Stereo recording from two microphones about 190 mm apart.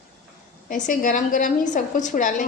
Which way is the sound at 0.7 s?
40° left (ahead or behind).